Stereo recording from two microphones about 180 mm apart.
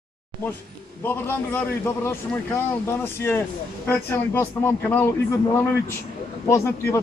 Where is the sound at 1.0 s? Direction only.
10° left (ahead or behind).